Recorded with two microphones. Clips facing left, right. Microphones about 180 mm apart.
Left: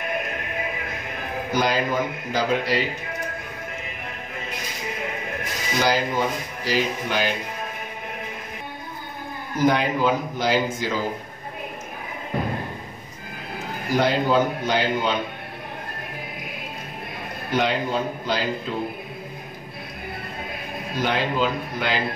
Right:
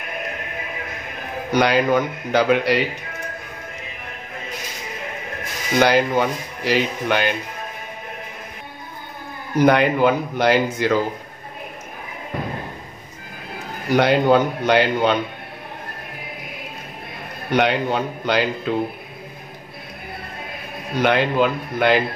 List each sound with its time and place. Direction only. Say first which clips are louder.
1.5 s a man's voice: right 6 dB; 70° right (ahead or behind)
5.8 s speech: right 6 dB; 65° right (ahead or behind)
9.6 s speech: right 5 dB; 65° right (ahead or behind)
13.9 s speech: right 5 dB; 65° right (ahead or behind)
17.5 s a man's voice: right 4 dB; 65° right (ahead or behind)
20.9 s speech: right 6 dB; 65° right (ahead or behind)